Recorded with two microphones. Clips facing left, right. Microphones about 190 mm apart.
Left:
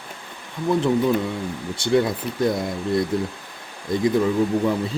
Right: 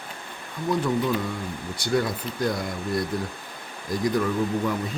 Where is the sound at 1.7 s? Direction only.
25° left (ahead or behind).